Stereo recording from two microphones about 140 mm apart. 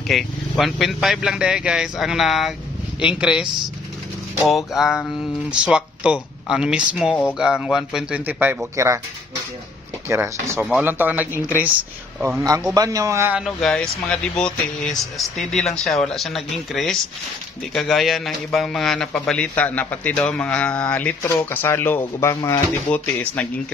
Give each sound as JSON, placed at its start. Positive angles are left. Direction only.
{"t": 0.1, "sound": "speech", "side_deg": 0}
{"t": 10.0, "sound": "a man's voice", "side_deg": -20}
{"t": 13.6, "sound": "a man's voice", "side_deg": 5}